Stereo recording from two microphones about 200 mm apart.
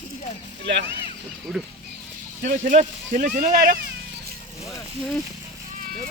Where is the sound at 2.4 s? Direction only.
40° right (ahead or behind).